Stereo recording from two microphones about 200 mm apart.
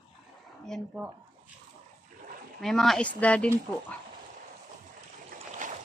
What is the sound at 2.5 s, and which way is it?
Speech, centre (ahead or behind).